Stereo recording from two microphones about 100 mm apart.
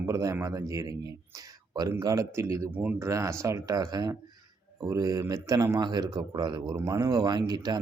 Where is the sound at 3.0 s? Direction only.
30° right (ahead or behind).